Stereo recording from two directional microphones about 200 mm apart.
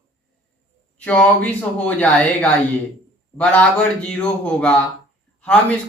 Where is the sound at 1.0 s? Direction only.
5° left (ahead or behind).